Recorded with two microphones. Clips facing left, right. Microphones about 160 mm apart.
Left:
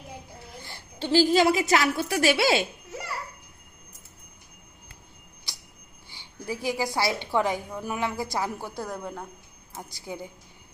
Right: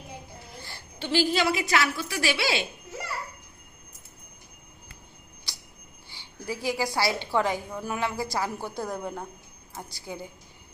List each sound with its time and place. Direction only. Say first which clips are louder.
0.9 s a woman's voice: left 5 dB; 35° left (ahead or behind)
6.1 s a woman's voice: left 1 dB; 20° left (ahead or behind)
8.8 s speech: right 3 dB; 10° right (ahead or behind)
9.9 s a woman's voice: left 2 dB; 20° left (ahead or behind)